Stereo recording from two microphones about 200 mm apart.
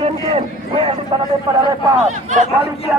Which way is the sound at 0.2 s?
20° right (ahead or behind).